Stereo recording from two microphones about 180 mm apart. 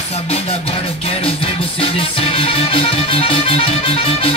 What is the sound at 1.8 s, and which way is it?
Music, 30° left (ahead or behind).